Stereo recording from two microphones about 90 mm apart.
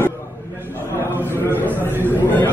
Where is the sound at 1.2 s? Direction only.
25° left (ahead or behind).